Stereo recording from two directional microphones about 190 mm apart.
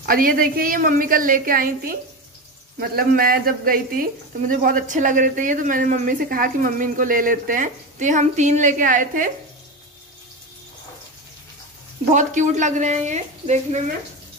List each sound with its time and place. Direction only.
0.0 s speech: 50° right (ahead or behind)
12.1 s a woman's voice: 40° right (ahead or behind)